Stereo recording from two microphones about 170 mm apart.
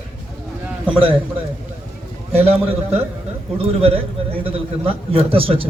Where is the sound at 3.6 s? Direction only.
35° right (ahead or behind).